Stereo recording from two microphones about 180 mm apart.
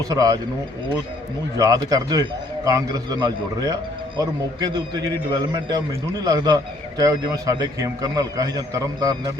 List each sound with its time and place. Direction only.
0.0 s a man's voice: 20° right (ahead or behind)
1.5 s a man's voice: 20° right (ahead or behind)
6.2 s a man's voice: 20° right (ahead or behind)